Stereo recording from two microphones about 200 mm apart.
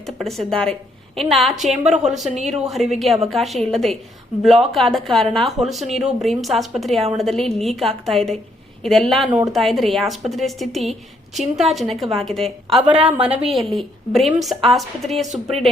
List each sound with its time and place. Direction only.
0.2 s speech: centre (ahead or behind)
13.1 s a woman's voice: 30° right (ahead or behind)
13.7 s speech: centre (ahead or behind)